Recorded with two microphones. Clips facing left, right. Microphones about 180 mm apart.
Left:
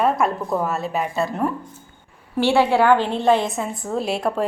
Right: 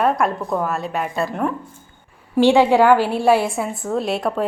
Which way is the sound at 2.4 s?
15° right (ahead or behind).